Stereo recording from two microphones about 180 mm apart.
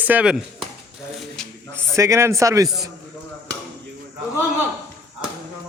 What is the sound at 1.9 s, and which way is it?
Speech, 15° right (ahead or behind).